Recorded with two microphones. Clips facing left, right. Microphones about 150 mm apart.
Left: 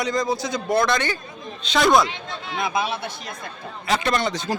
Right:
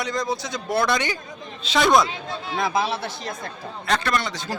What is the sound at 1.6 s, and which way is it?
Speech, centre (ahead or behind).